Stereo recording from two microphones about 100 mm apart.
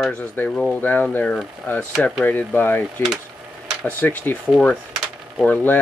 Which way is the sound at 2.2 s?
20° left (ahead or behind).